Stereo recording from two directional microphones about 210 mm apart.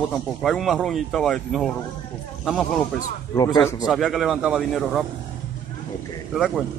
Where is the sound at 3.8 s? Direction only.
Centre (ahead or behind).